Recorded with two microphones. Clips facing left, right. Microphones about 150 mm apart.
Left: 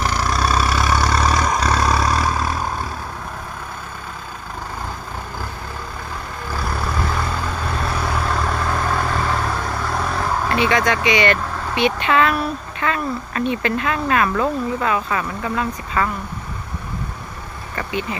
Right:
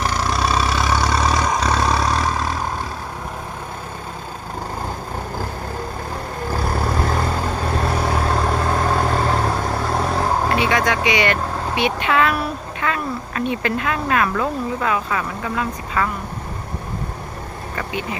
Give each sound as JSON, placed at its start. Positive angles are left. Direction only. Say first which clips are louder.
{"t": 0.0, "sound": "vehicle", "louder": "even", "side_deg": 0}
{"t": 6.5, "sound": "vehicle", "louder": "right 2 dB", "side_deg": -40}
{"t": 10.5, "sound": "speech", "louder": "left 1 dB", "side_deg": -10}